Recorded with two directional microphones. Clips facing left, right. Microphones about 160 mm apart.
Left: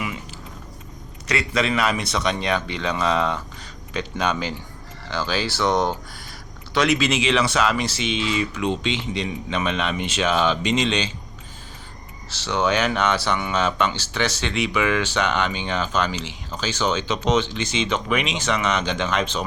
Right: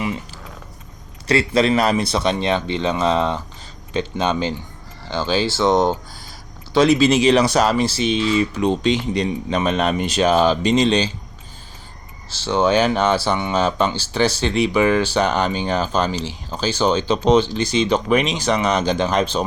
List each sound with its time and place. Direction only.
1.3 s speech: 30° right (ahead or behind)
12.3 s speech: 30° right (ahead or behind)